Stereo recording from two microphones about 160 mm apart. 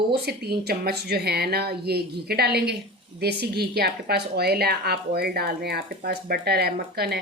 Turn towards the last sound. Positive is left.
turn(degrees=-80)